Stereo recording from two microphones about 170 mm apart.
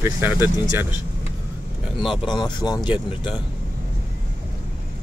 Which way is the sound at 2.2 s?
25° left (ahead or behind).